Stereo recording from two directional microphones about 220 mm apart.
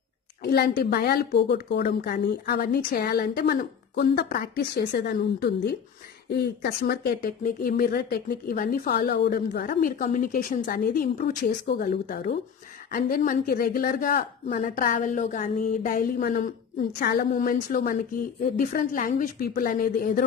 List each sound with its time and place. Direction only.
0.4 s a woman's voice: 45° left (ahead or behind)